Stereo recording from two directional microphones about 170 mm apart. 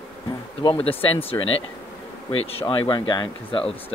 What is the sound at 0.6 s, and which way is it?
Speech, 30° left (ahead or behind).